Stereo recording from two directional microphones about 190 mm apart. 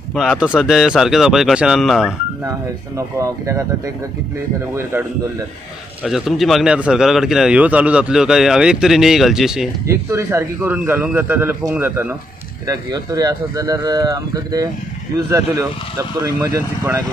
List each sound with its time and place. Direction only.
0.1 s speech: centre (ahead or behind)
3.2 s a man's voice: 15° right (ahead or behind)
6.0 s speech: centre (ahead or behind)
9.8 s a man's voice: 15° right (ahead or behind)